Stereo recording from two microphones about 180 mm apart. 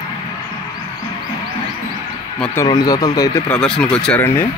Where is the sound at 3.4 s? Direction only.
5° left (ahead or behind).